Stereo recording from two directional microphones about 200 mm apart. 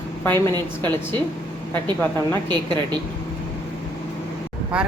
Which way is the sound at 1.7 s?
10° left (ahead or behind).